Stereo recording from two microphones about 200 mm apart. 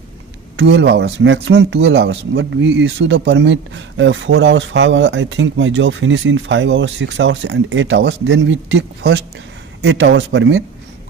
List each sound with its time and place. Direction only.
0.6 s speech: 60° right (ahead or behind)